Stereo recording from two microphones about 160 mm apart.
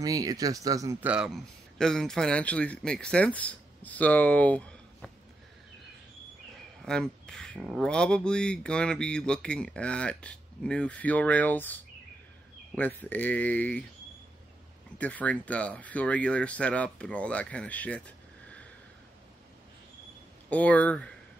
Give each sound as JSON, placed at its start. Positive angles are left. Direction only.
{"t": 0.0, "sound": "speech", "side_deg": -20}
{"t": 1.0, "sound": "speech", "side_deg": -5}
{"t": 6.9, "sound": "speech", "side_deg": 5}
{"t": 15.0, "sound": "speech", "side_deg": 10}
{"t": 20.4, "sound": "speech", "side_deg": 10}